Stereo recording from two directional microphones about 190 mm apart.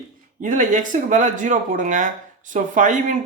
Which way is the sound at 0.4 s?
40° right (ahead or behind).